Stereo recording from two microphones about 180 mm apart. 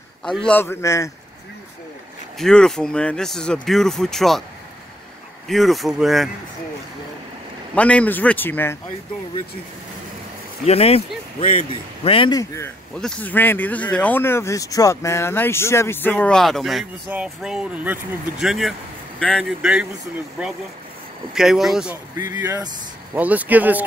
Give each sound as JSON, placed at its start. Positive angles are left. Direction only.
{"t": 0.2, "sound": "speech", "side_deg": 5}
{"t": 2.3, "sound": "speech", "side_deg": 5}
{"t": 5.5, "sound": "speech", "side_deg": 0}
{"t": 7.7, "sound": "speech", "side_deg": 5}
{"t": 10.6, "sound": "speech", "side_deg": 35}